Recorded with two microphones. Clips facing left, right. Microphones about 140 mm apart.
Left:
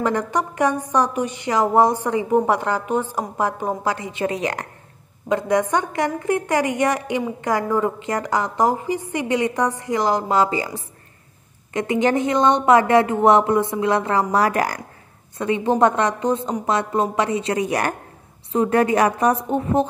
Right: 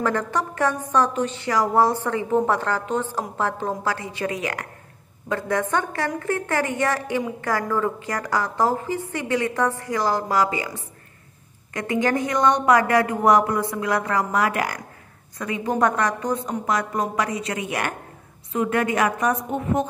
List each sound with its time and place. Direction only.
0.0 s a woman's voice: 15° left (ahead or behind)
5.3 s a woman's voice: 15° left (ahead or behind)
11.7 s a woman's voice: 20° left (ahead or behind); by 14.8 s 40° left (ahead or behind)
15.3 s a woman's voice: 25° left (ahead or behind)